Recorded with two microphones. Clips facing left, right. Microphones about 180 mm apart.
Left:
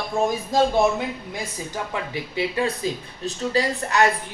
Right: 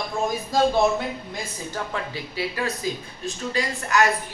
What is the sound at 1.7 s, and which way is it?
A man's voice, 20° left (ahead or behind).